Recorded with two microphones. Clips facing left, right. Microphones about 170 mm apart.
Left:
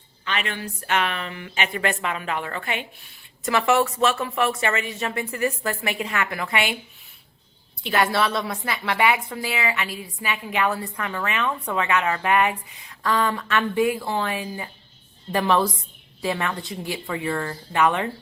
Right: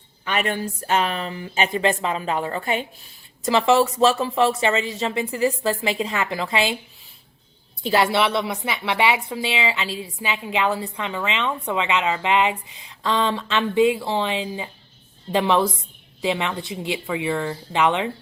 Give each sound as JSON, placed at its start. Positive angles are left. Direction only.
{"t": 0.3, "sound": "a woman's voice", "side_deg": -45}
{"t": 0.6, "sound": "speech", "side_deg": -30}
{"t": 1.7, "sound": "a woman's voice", "side_deg": -25}
{"t": 7.9, "sound": "a woman's voice", "side_deg": -25}